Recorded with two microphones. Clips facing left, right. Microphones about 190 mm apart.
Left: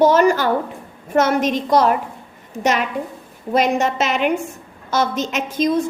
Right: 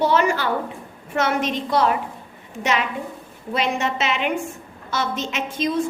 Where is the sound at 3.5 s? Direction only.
45° left (ahead or behind).